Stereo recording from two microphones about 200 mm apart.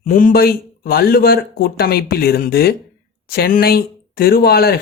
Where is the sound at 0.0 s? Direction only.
40° left (ahead or behind).